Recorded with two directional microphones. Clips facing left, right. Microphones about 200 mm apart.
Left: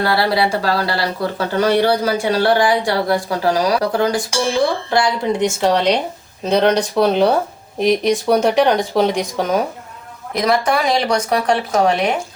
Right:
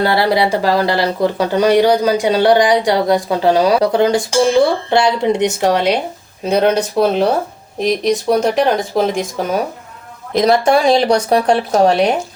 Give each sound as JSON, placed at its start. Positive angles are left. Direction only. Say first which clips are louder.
{"t": 0.0, "sound": "speech", "louder": "right 3 dB", "side_deg": -20}
{"t": 5.5, "sound": "speech", "louder": "right 1 dB", "side_deg": -10}
{"t": 10.3, "sound": "speech", "louder": "right 5 dB", "side_deg": -25}